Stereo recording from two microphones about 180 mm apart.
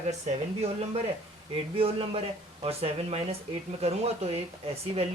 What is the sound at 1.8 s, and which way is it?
Speech, 35° right (ahead or behind).